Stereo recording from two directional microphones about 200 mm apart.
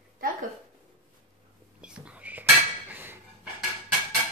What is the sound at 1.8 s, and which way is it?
Whispering, 5° right (ahead or behind).